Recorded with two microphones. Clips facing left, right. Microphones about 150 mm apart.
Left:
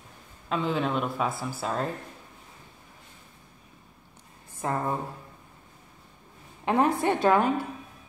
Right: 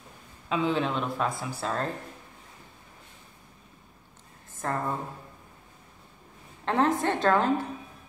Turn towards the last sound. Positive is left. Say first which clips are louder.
# left 2 dB
turn(degrees=10)  # may be behind; listen again after turning